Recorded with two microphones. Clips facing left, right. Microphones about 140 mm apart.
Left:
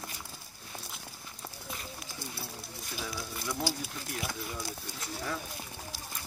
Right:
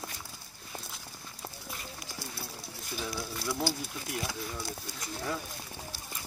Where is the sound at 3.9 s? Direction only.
Centre (ahead or behind).